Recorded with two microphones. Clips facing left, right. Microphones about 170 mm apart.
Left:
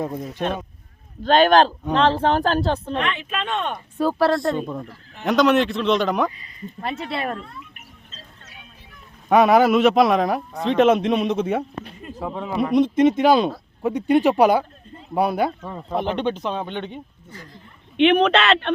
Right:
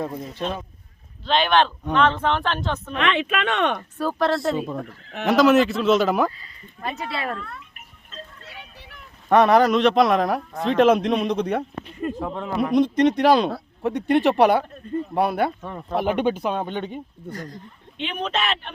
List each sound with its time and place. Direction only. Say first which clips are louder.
0.0 s speech: left 2 dB; 15° left (ahead or behind)
1.2 s speech: left 5 dB; 45° left (ahead or behind)
3.0 s speech: right 4 dB; 90° right
3.9 s speech: left 4 dB; 10° left (ahead or behind)
4.3 s a man's voice: left 1 dB; centre (ahead or behind)
7.1 s speech: left 2 dB; 20° left (ahead or behind)
9.3 s a man's voice: left 1 dB; 5° left (ahead or behind)
16.0 s speech: right 2 dB; 10° right (ahead or behind)
17.2 s speech: right 8 dB; 45° right (ahead or behind)
17.9 s speech: left 11 dB; 70° left (ahead or behind)